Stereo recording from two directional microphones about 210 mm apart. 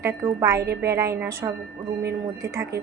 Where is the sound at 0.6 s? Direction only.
50° right (ahead or behind).